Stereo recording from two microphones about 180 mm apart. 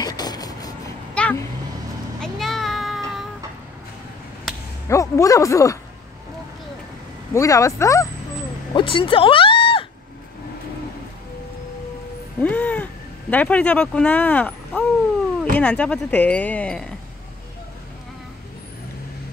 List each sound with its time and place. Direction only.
0.0 s vehicle: 20° left (ahead or behind)
1.1 s vehicle: 5° left (ahead or behind)
2.1 s a sound: 5° left (ahead or behind)
4.8 s speech: 15° left (ahead or behind)
7.3 s speech: 15° left (ahead or behind)
8.7 s a sound: 30° left (ahead or behind)
12.4 s speech: 10° left (ahead or behind)